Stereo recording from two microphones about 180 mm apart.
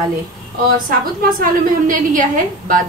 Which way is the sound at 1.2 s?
50° right (ahead or behind).